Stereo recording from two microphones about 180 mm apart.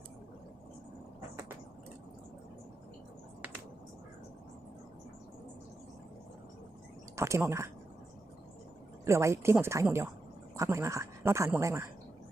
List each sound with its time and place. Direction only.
7.2 s speech: 15° right (ahead or behind)
9.0 s speech: 15° right (ahead or behind)